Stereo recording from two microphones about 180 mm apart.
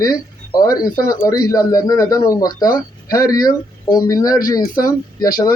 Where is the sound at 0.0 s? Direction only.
20° left (ahead or behind).